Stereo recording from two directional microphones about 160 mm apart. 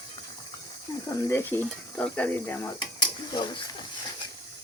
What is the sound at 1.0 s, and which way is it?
Stir, 20° left (ahead or behind).